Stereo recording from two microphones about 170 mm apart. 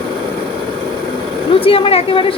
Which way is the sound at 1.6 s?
35° left (ahead or behind).